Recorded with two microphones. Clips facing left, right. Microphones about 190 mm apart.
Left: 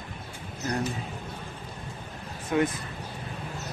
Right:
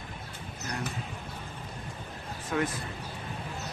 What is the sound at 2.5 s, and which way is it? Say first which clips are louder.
Speech: left 5 dB; 20° left (ahead or behind).